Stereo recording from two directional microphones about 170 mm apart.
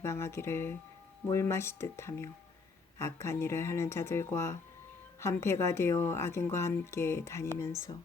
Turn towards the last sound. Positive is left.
turn(degrees=15)  # may be behind; listen again after turning